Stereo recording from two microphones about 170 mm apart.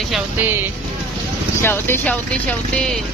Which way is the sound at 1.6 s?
15° left (ahead or behind).